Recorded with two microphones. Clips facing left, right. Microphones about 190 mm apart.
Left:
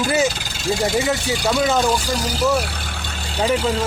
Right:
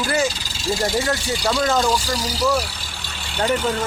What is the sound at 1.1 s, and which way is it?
Speech, 5° left (ahead or behind).